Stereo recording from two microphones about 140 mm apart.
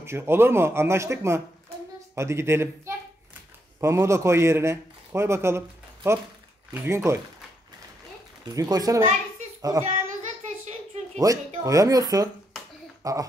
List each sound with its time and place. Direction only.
0.0 s a man's voice: 20° right (ahead or behind)
8.5 s a man's voice: 25° right (ahead or behind)
11.1 s a man's voice: 25° right (ahead or behind)